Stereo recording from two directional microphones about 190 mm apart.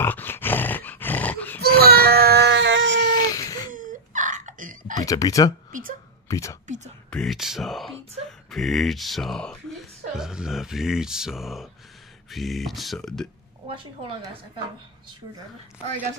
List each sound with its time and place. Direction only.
0.0 s dog: 10° left (ahead or behind)
1.6 s child singing: 55° right (ahead or behind); by 3.1 s 70° right (ahead or behind)
3.2 s a sound: 20° left (ahead or behind)
3.7 s a sound: 45° right (ahead or behind)
4.9 s speech: 20° left (ahead or behind)
5.7 s a sound: 45° right (ahead or behind)
6.2 s speech: 15° left (ahead or behind)
7.1 s speech: centre (ahead or behind)
13.7 s a woman's voice: 25° right (ahead or behind)